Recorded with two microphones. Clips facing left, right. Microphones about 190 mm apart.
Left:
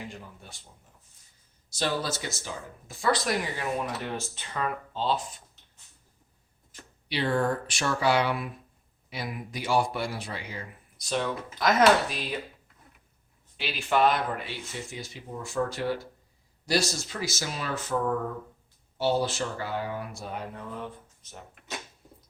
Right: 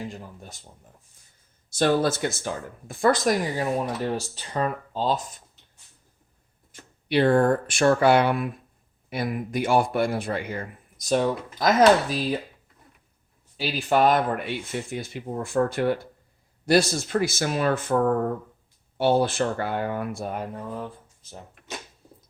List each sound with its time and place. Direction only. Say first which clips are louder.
0.0 s speech: right 5 dB; 40° right (ahead or behind)
1.7 s speech: right 8 dB; 55° right (ahead or behind)
7.1 s speech: right 8 dB; 55° right (ahead or behind)
13.6 s speech: right 3 dB; 40° right (ahead or behind)